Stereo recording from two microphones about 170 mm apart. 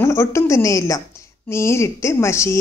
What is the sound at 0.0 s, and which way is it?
A woman's voice, 15° left (ahead or behind).